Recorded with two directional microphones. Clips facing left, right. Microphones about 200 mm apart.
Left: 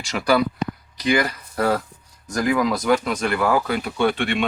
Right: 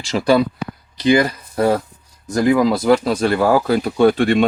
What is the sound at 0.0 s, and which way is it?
Speech, 30° right (ahead or behind).